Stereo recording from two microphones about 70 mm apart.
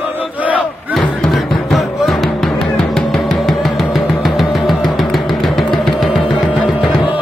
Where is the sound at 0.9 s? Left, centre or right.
Centre.